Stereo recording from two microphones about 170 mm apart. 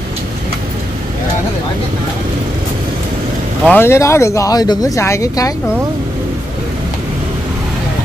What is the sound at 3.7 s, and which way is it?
Speech, 15° left (ahead or behind).